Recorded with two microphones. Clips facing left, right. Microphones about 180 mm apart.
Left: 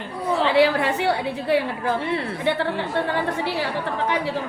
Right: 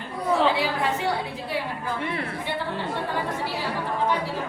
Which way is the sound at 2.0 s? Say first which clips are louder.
Left 4 dB; 30° left (ahead or behind).